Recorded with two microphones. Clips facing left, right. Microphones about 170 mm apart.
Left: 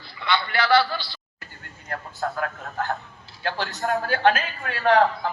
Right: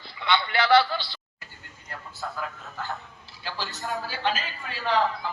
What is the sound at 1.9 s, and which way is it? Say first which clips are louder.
Speech: left 7 dB; 60° left (ahead or behind).